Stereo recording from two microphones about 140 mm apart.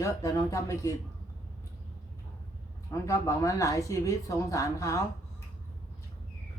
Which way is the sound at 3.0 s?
20° left (ahead or behind).